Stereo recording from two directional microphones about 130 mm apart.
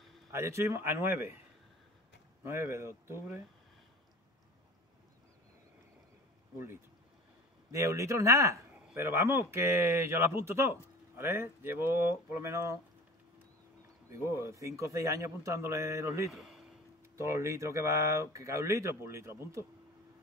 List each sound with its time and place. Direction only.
0.3 s speech: 20° right (ahead or behind)
2.4 s speech: 20° right (ahead or behind)
7.7 s speech: 25° right (ahead or behind)
14.1 s speech: 20° right (ahead or behind)
16.3 s a man's voice: centre (ahead or behind)
17.2 s speech: 20° right (ahead or behind)